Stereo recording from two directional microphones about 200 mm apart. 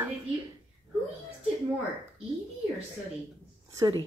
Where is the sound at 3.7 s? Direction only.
20° right (ahead or behind).